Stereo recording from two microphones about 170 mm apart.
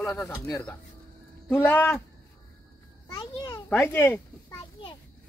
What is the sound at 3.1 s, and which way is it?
A child's voice, 25° left (ahead or behind).